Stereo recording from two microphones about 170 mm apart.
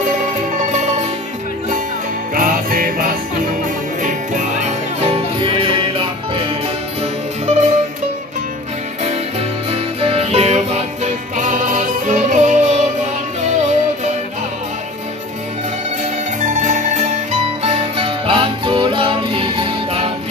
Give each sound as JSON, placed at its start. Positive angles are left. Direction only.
{"t": 0.7, "sound": "music", "side_deg": -40}
{"t": 2.3, "sound": "music", "side_deg": -55}
{"t": 7.0, "sound": "music", "side_deg": -40}
{"t": 9.7, "sound": "music", "side_deg": -35}
{"t": 16.0, "sound": "music", "side_deg": -45}